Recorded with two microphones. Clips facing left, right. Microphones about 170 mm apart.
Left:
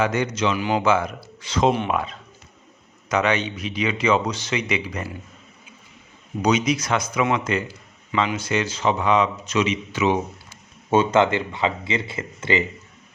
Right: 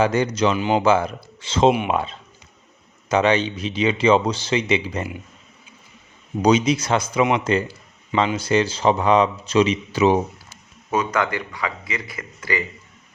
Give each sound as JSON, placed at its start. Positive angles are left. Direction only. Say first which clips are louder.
{"t": 0.0, "sound": "a man's voice", "louder": "right 3 dB", "side_deg": -35}
{"t": 0.5, "sound": "speech", "louder": "right 2 dB", "side_deg": -25}
{"t": 6.4, "sound": "a man's voice", "louder": "right 3 dB", "side_deg": -30}
{"t": 10.9, "sound": "a man's voice", "louder": "left 4 dB", "side_deg": 25}